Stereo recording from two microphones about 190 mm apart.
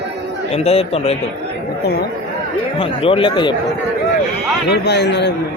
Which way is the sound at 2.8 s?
30° left (ahead or behind).